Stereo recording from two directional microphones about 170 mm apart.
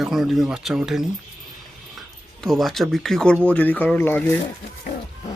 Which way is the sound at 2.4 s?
Centre (ahead or behind).